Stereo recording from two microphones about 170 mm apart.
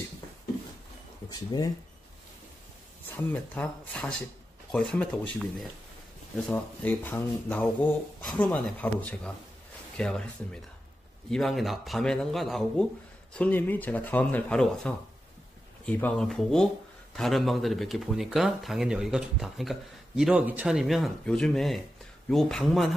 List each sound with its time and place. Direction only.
1.3 s speech: 25° left (ahead or behind)
3.1 s speech: 10° left (ahead or behind)
6.3 s speech: 5° left (ahead or behind)